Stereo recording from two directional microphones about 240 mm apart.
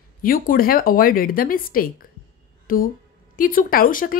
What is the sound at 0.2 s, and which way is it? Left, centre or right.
A woman's voice, left.